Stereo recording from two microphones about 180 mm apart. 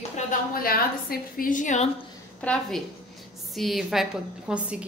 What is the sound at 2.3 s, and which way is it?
Speech, 5° left (ahead or behind).